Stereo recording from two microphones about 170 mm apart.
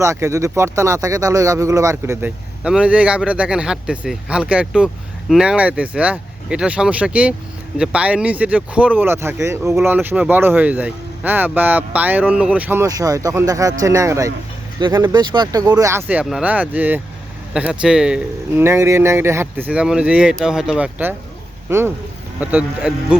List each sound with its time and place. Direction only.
0.0 s speech: 15° right (ahead or behind)